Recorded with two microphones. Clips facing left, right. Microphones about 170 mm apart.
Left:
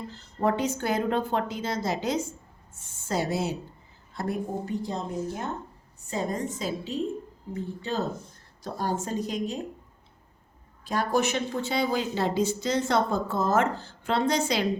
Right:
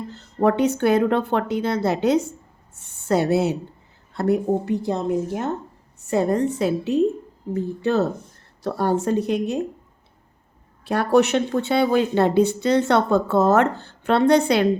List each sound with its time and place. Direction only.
0.3 s a woman's voice: 65° right (ahead or behind)
10.8 s speech: 65° right (ahead or behind)